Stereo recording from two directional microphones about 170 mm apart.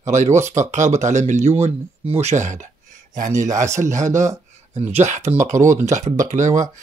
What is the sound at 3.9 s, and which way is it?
Speech, 45° right (ahead or behind).